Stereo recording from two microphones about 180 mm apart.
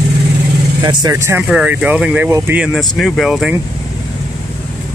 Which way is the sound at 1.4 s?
5° right (ahead or behind).